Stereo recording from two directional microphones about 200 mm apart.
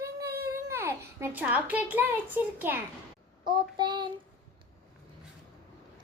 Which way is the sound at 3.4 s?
20° right (ahead or behind).